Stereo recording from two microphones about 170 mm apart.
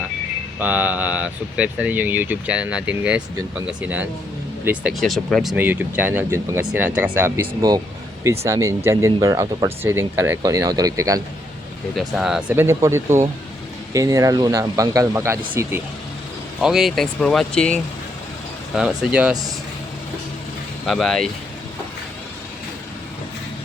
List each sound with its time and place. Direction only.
0.6 s speech: 10° right (ahead or behind)
11.9 s speech: centre (ahead or behind)
16.6 s speech: centre (ahead or behind)
20.8 s speech: centre (ahead or behind)